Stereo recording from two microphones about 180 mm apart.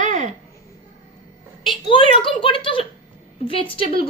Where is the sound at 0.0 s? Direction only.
45° right (ahead or behind).